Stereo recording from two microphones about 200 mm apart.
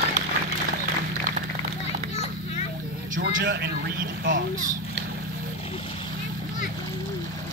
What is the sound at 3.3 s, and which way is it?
A man's voice, 70° right (ahead or behind).